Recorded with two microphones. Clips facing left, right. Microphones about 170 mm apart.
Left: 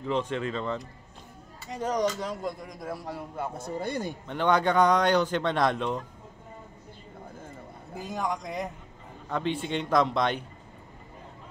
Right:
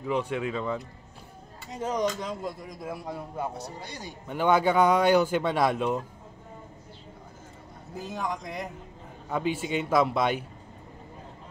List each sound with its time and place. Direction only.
0.0 s a man's voice: 10° right (ahead or behind)
3.5 s speech: 50° left (ahead or behind)
4.3 s a man's voice: 5° right (ahead or behind)
8.1 s a man's voice: centre (ahead or behind)